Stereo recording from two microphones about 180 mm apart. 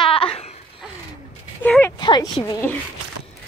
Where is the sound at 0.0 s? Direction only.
30° left (ahead or behind).